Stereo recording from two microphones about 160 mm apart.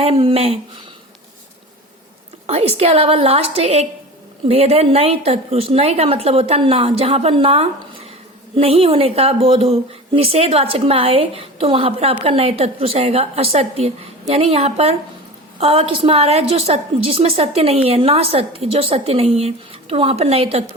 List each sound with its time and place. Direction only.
0.0 s speech: 35° right (ahead or behind)
2.5 s speech: 40° right (ahead or behind)